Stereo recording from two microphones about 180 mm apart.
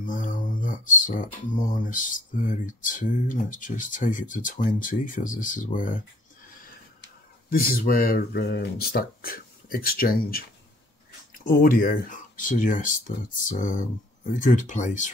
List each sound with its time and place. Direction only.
0.0 s speech: 45° left (ahead or behind)
7.4 s speech: 55° left (ahead or behind)